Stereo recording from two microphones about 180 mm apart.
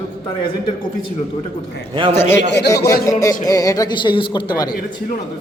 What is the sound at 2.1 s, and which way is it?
Music, 15° left (ahead or behind).